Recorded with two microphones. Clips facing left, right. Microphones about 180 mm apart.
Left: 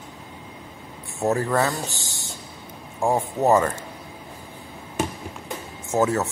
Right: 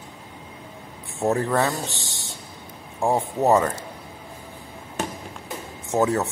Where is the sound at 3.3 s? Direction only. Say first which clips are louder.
Even; centre (ahead or behind).